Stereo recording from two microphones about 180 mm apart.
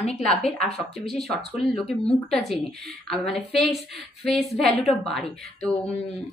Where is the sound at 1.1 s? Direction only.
Centre (ahead or behind).